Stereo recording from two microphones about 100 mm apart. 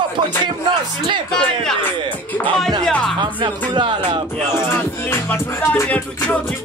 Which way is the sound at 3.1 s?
50° right (ahead or behind).